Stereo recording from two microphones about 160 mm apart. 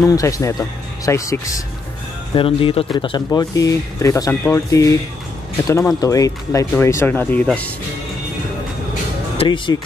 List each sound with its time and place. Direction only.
0.0 s speech: 20° left (ahead or behind)
2.3 s speech: 35° left (ahead or behind); by 7.7 s 10° left (ahead or behind)
9.4 s speech: 30° left (ahead or behind)